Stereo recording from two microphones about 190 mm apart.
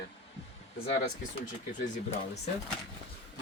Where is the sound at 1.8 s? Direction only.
35° left (ahead or behind).